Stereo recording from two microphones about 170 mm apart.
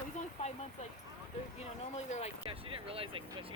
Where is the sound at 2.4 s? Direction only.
30° right (ahead or behind).